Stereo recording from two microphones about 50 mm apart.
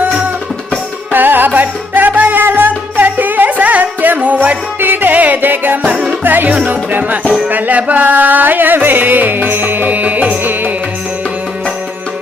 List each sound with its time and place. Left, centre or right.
1.1 s music: right
2.4 s music: right
4.8 s music: right
5.9 s music: right
6.2 s music: right